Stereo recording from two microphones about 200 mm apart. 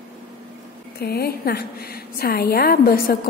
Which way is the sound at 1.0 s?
50° left (ahead or behind).